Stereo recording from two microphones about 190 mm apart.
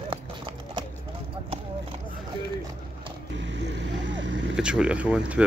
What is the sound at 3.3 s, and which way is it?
Vehicle, 65° right (ahead or behind).